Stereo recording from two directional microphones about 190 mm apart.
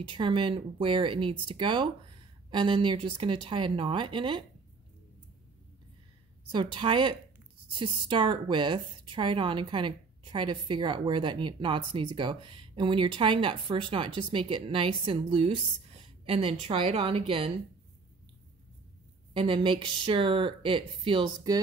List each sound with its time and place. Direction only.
0.0 s a woman's voice: 25° right (ahead or behind)
6.5 s a woman's voice: 25° right (ahead or behind)
19.3 s a woman's voice: 25° right (ahead or behind)